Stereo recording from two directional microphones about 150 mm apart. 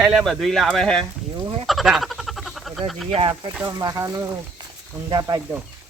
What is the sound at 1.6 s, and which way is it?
Frog, centre (ahead or behind).